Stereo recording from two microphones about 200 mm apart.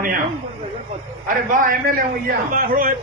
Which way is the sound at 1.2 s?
45° right (ahead or behind).